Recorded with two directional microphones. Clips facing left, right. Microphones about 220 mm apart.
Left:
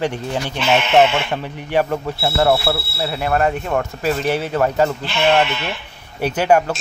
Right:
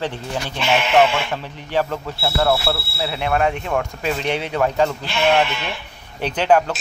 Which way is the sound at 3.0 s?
Centre (ahead or behind).